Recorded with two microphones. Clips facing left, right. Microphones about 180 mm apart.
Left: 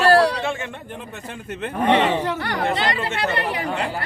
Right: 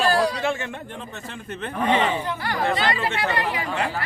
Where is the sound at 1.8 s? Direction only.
75° left (ahead or behind).